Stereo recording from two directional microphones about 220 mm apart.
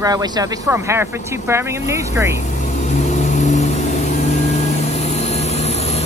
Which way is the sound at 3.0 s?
30° left (ahead or behind).